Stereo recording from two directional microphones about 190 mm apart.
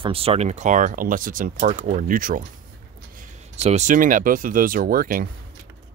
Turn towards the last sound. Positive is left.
turn(degrees=-50)  # may be behind; listen again after turning